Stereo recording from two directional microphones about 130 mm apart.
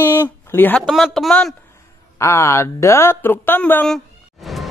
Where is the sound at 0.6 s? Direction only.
15° left (ahead or behind).